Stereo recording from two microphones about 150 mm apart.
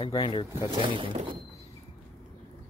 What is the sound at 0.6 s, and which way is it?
Speech, 35° right (ahead or behind).